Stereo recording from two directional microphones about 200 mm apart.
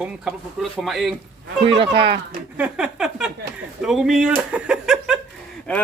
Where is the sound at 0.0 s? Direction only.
Centre (ahead or behind).